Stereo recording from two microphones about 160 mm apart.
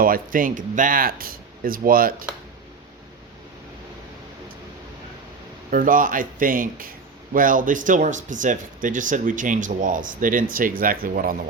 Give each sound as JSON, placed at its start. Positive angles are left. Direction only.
{"t": 0.0, "sound": "speech", "side_deg": -60}
{"t": 5.7, "sound": "speech", "side_deg": -60}